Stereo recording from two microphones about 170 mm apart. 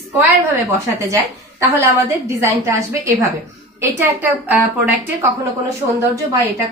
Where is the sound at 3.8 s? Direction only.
10° right (ahead or behind).